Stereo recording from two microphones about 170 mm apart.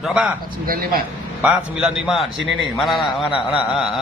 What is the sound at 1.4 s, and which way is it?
Mantra, 5° right (ahead or behind).